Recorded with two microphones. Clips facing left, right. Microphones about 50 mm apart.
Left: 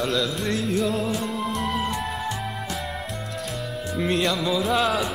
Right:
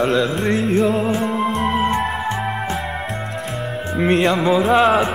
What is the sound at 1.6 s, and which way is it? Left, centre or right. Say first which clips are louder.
Music: right 8 dB; right.